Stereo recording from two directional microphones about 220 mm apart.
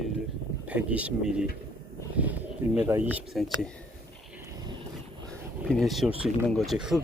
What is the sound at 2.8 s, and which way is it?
Speech, 10° right (ahead or behind).